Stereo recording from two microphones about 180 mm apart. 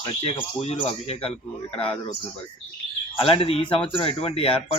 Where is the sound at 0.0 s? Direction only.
30° left (ahead or behind).